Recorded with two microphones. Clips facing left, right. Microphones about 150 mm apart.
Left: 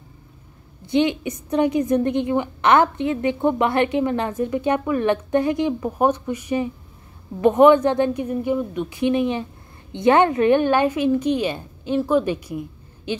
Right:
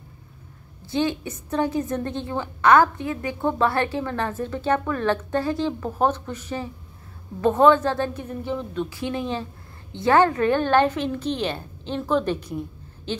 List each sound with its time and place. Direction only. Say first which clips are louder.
0.8 s a woman's voice: left 5 dB; 20° left (ahead or behind)